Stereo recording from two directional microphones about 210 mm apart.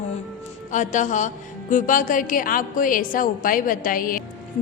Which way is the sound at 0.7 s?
35° left (ahead or behind).